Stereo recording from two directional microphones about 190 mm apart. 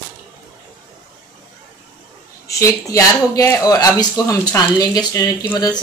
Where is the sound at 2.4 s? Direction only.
15° left (ahead or behind).